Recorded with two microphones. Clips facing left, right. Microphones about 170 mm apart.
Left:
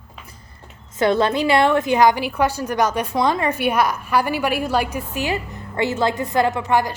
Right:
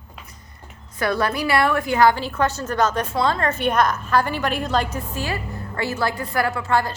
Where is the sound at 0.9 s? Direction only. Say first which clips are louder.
Left 5 dB; 20° left (ahead or behind).